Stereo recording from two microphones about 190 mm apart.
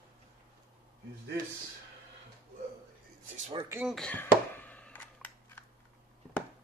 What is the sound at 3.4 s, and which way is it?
Speech, 35° right (ahead or behind).